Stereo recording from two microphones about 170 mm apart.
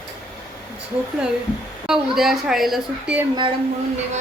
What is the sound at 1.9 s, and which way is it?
Speech, 5° right (ahead or behind).